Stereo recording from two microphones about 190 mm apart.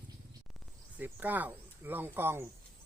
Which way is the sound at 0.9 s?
10° right (ahead or behind).